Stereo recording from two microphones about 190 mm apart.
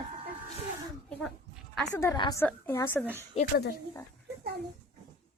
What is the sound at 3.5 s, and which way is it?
Speech, 55° left (ahead or behind).